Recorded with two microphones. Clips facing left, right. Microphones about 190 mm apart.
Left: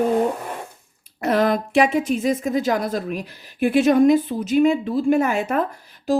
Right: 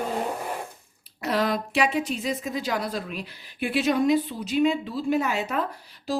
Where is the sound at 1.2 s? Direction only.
50° left (ahead or behind).